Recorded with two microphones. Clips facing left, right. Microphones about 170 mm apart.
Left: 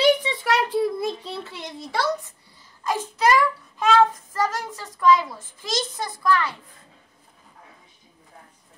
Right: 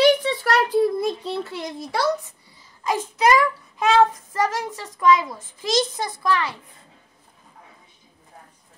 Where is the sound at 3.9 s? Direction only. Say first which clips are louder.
Right 2 dB; 20° right (ahead or behind).